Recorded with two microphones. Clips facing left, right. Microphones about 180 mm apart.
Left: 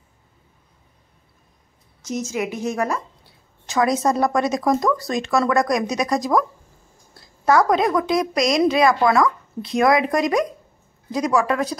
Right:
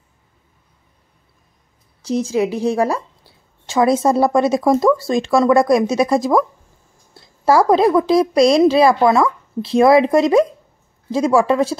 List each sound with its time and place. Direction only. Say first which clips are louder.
2.0 s a woman's voice: right 7 dB; 30° right (ahead or behind)